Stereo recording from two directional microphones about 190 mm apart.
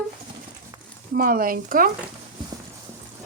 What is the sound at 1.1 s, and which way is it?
Speech, 50° right (ahead or behind).